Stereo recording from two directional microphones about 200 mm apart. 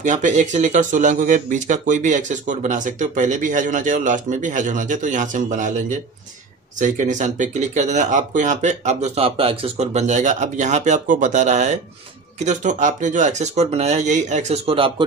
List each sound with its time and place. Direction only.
0.0 s speech: 35° right (ahead or behind)